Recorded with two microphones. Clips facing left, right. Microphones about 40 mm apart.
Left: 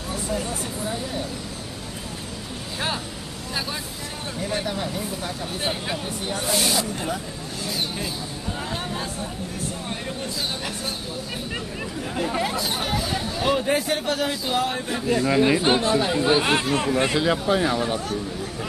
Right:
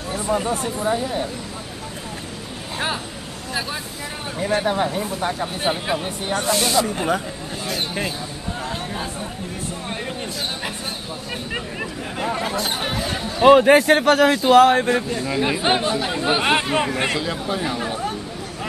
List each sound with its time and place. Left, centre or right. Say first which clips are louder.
0.1 s speech: right 6 dB; right
4.6 s speech: right 6 dB; right
5.6 s speech: right 4 dB; centre
8.6 s a sound: right 2 dB; centre
11.5 s speech: right 3 dB; centre
13.4 s a man's voice: right 12 dB; right
15.1 s speech: left 3 dB; centre
15.6 s speech: even; right
17.2 s speech: left 4 dB; centre
17.7 s speech: left 1 dB; centre